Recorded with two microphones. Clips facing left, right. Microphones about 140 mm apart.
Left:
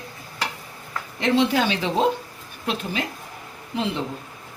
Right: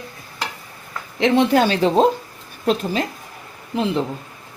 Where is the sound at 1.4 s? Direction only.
45° right (ahead or behind).